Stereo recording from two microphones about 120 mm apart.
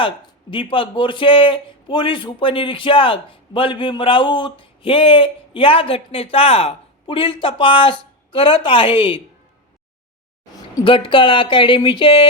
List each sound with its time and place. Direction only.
0.5 s a man's voice: 45° left (ahead or behind)
10.8 s a man's voice: 45° left (ahead or behind)